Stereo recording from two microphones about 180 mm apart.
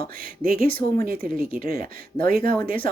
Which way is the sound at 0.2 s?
50° right (ahead or behind).